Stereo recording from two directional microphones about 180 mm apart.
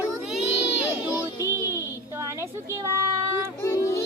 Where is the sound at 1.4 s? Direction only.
15° right (ahead or behind).